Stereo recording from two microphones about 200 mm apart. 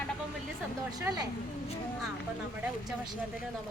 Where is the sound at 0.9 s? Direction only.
20° right (ahead or behind).